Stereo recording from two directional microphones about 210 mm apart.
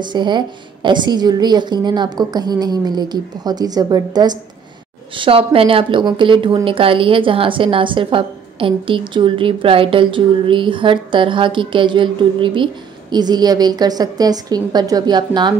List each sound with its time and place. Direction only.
0.0 s speech: 20° right (ahead or behind)